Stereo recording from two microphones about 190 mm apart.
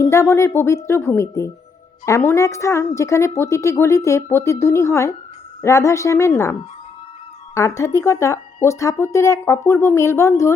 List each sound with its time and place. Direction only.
0.0 s a woman's voice: 15° left (ahead or behind)